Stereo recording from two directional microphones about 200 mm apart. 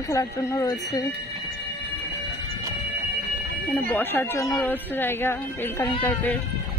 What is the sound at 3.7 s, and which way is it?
Speech, 10° left (ahead or behind).